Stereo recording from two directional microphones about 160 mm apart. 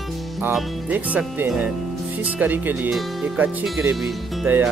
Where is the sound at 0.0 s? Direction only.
Centre (ahead or behind).